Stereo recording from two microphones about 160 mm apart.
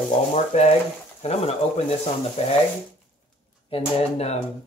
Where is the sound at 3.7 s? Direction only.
40° left (ahead or behind).